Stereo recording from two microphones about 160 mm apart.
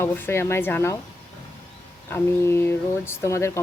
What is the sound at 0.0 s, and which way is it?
Speech, 15° left (ahead or behind).